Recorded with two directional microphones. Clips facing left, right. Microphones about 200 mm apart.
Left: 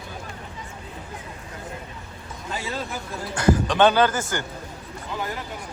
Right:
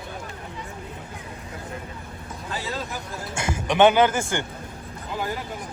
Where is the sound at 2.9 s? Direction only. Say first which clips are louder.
Left 1 dB; 20° right (ahead or behind).